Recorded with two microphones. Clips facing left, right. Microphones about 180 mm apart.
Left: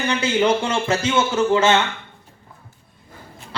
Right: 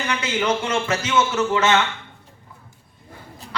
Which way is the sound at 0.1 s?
30° left (ahead or behind).